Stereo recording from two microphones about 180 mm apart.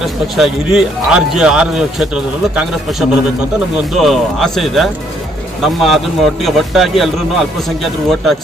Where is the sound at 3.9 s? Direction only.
Centre (ahead or behind).